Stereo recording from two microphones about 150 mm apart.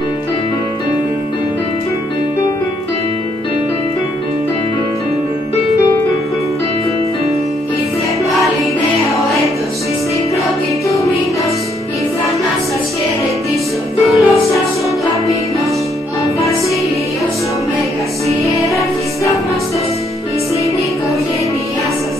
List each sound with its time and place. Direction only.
9.1 s music: centre (ahead or behind)
14.0 s music: centre (ahead or behind)
16.3 s music: 20° left (ahead or behind)